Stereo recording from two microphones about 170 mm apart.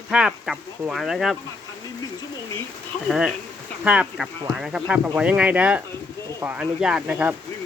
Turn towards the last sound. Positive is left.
turn(degrees=-10)  # may be behind; listen again after turning